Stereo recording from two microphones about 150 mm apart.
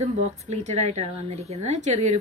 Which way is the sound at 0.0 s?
50° right (ahead or behind).